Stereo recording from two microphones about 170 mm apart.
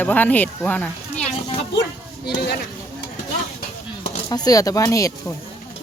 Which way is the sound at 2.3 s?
75° left (ahead or behind).